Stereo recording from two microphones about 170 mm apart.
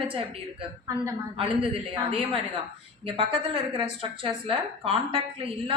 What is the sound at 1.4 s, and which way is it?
Speech, 35° right (ahead or behind).